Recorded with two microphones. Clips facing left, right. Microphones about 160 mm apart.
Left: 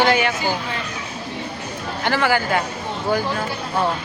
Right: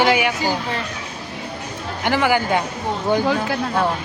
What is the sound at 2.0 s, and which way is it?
Speech, 15° right (ahead or behind).